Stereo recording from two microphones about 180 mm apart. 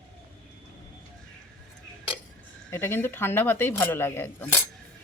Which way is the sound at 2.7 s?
15° left (ahead or behind).